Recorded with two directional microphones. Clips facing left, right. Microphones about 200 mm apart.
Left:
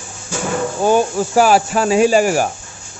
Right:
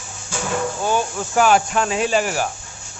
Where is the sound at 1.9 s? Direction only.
45° left (ahead or behind).